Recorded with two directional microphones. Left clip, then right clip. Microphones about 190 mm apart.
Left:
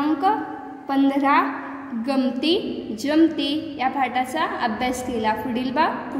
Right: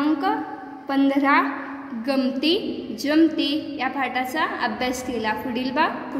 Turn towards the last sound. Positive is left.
turn(degrees=10)  # may be behind; listen again after turning